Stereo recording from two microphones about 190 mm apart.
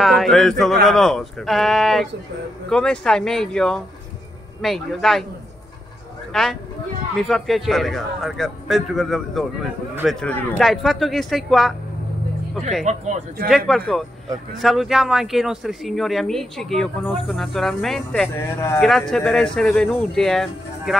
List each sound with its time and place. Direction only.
0.0 s speech: centre (ahead or behind)
6.3 s speech: centre (ahead or behind)
12.8 s speech: 40° right (ahead or behind)
13.7 s speech: centre (ahead or behind)